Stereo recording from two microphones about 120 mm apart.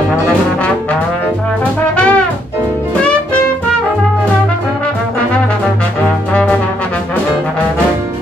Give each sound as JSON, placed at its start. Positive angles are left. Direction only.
{"t": 2.0, "sound": "brass instrument", "side_deg": 10}